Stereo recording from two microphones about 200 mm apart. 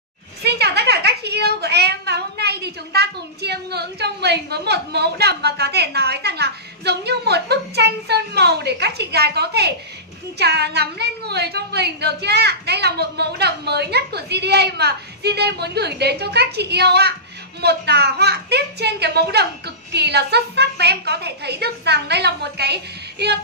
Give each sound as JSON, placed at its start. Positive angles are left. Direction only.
{"t": 0.4, "sound": "a woman's voice", "side_deg": -55}